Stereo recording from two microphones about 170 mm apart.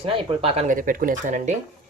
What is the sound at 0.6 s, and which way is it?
Speech, 55° right (ahead or behind).